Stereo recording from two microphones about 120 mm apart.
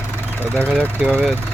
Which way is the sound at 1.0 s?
10° right (ahead or behind).